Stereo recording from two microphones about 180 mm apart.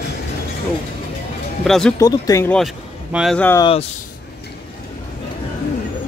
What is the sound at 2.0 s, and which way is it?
Speech, 20° left (ahead or behind).